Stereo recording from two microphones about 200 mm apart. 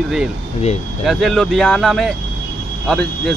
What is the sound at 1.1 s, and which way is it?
Speech, centre (ahead or behind).